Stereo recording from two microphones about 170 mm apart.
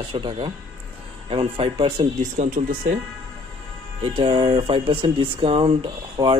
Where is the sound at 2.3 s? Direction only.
50° right (ahead or behind).